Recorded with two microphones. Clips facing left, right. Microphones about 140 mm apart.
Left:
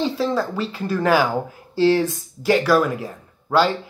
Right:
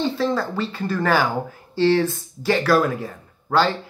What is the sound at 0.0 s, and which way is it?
Speech, 10° left (ahead or behind).